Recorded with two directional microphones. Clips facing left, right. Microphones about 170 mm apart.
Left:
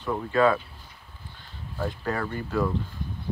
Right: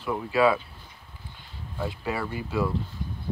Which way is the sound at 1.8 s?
10° right (ahead or behind).